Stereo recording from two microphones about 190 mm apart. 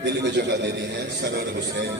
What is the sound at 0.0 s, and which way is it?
A man's voice, 60° right (ahead or behind).